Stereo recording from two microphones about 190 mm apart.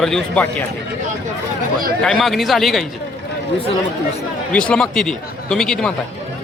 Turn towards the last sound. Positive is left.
turn(degrees=5)  # may be behind; listen again after turning